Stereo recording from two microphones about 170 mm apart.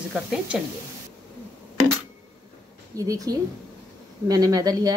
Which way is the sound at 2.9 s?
20° right (ahead or behind).